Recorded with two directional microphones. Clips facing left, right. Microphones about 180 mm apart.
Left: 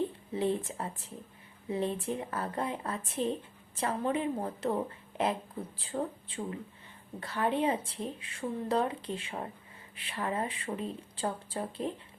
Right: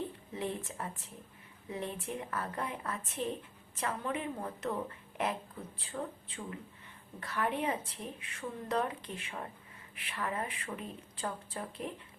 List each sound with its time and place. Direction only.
0.3 s a woman's voice: 30° left (ahead or behind)